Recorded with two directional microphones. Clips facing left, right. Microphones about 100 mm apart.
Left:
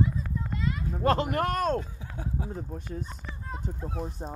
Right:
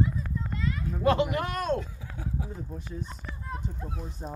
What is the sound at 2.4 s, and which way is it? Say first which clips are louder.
Speech: left 2 dB; 50° left (ahead or behind).